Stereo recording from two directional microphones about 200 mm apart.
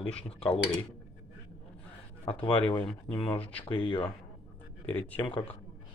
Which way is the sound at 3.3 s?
5° left (ahead or behind).